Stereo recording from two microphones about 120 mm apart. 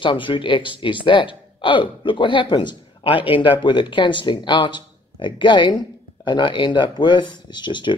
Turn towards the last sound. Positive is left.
turn(degrees=40)  # may be behind; listen again after turning